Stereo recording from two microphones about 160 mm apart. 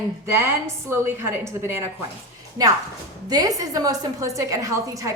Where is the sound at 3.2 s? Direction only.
25° right (ahead or behind).